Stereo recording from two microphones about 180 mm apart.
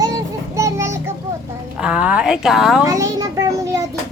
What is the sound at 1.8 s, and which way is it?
A woman's voice, 5° right (ahead or behind).